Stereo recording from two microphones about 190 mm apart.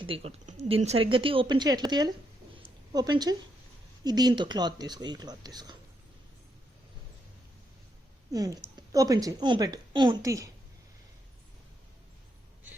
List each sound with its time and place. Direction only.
0.0 s a woman's voice: 30° right (ahead or behind)
8.3 s a woman's voice: 20° right (ahead or behind)